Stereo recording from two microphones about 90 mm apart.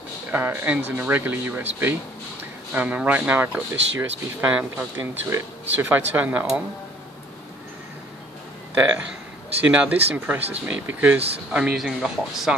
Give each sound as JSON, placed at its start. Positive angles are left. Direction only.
{"t": 0.3, "sound": "speech", "side_deg": -20}
{"t": 4.9, "sound": "speech", "side_deg": -30}
{"t": 8.7, "sound": "speech", "side_deg": -15}
{"t": 11.7, "sound": "speech", "side_deg": -5}